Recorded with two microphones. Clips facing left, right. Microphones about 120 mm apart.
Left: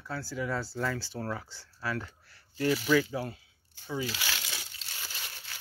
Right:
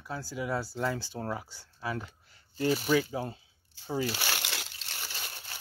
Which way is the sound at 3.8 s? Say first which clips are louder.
Right 3 dB; 40° right (ahead or behind).